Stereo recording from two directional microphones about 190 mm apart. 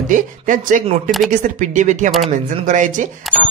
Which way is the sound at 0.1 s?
45° right (ahead or behind).